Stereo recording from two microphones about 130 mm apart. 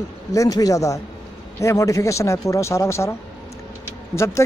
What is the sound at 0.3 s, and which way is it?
Speech, 25° left (ahead or behind).